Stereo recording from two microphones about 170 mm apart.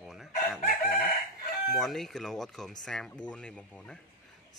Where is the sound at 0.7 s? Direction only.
60° left (ahead or behind).